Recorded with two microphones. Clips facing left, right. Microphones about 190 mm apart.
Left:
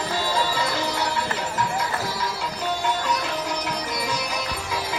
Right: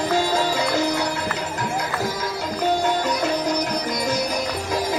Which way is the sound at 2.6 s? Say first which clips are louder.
Right 5 dB; 45° right (ahead or behind).